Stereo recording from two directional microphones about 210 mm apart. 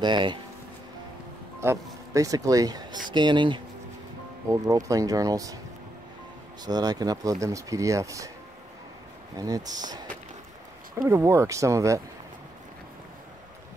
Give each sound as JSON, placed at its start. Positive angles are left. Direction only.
{"t": 0.0, "sound": "speech", "side_deg": -20}
{"t": 1.6, "sound": "speech", "side_deg": -15}
{"t": 6.6, "sound": "speech", "side_deg": -20}
{"t": 9.4, "sound": "speech", "side_deg": -15}
{"t": 11.0, "sound": "speech", "side_deg": -15}